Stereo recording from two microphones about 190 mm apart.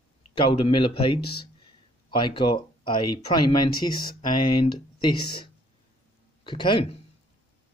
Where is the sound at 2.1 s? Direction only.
25° left (ahead or behind).